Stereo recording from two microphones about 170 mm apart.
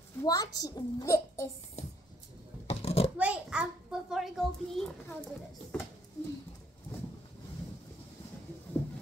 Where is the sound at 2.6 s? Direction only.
35° left (ahead or behind).